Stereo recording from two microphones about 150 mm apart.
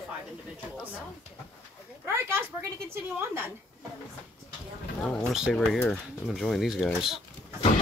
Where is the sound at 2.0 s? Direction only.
15° right (ahead or behind).